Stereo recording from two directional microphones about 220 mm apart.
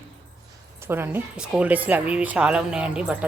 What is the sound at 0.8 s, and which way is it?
Speech, 10° right (ahead or behind).